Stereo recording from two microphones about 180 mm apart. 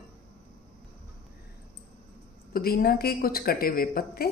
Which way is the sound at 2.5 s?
55° left (ahead or behind).